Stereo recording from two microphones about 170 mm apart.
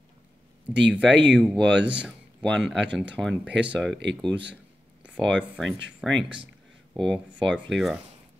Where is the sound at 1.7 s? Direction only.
90° right.